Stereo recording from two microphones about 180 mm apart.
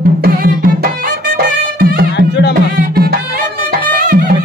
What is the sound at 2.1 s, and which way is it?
Music, 70° left (ahead or behind).